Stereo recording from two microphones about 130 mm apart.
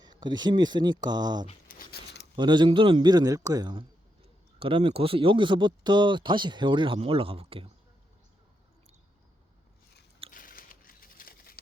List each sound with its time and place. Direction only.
0.0 s speech: 35° right (ahead or behind)
1.7 s a sound: 90° left
2.3 s speech: 35° right (ahead or behind)
10.3 s crumpling: 90° left